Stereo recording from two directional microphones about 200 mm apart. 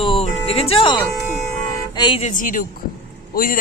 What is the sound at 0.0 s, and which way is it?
Music, 30° left (ahead or behind).